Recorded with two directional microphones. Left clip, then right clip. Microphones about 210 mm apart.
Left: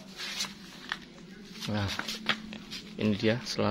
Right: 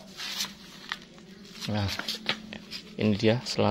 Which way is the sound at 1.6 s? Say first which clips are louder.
Right 1 dB; 15° right (ahead or behind).